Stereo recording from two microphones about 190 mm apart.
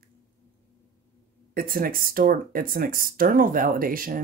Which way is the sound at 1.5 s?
50° right (ahead or behind).